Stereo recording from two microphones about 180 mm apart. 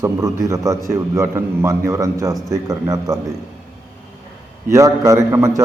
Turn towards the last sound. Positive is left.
turn(degrees=-15)  # may be behind; listen again after turning